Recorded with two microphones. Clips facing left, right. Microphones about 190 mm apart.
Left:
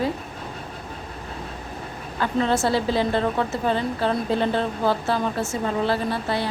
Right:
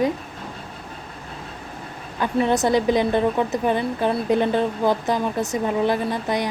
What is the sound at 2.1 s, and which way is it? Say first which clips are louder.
A woman's voice: right 2 dB; 15° right (ahead or behind).